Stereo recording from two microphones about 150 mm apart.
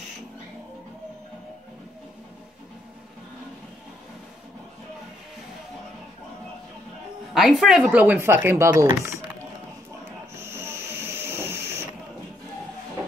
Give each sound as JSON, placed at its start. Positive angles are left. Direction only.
{"t": 7.3, "sound": "a woman's voice", "side_deg": 0}
{"t": 10.4, "sound": "train", "side_deg": -15}